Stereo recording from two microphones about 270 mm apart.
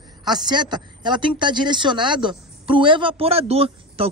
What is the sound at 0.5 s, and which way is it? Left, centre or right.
Speech, centre.